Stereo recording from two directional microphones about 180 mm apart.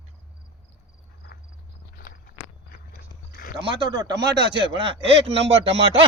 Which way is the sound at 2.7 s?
55° left (ahead or behind).